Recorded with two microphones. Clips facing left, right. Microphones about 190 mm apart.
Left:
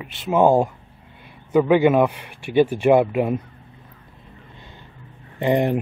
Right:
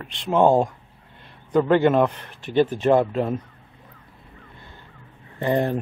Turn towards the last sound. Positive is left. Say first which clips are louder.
# left 3 dB
turn(degrees=15)  # may be behind; listen again after turning